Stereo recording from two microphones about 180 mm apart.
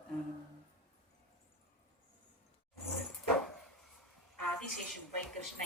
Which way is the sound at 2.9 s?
Centre (ahead or behind).